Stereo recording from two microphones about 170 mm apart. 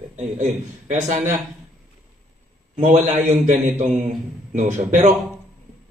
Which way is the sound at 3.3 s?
45° right (ahead or behind).